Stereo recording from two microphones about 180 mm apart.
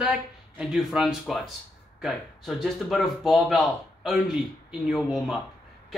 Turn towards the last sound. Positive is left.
turn(degrees=0)  # may be behind; listen again after turning